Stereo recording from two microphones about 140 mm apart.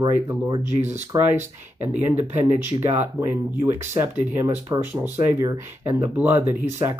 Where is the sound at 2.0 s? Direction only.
15° right (ahead or behind).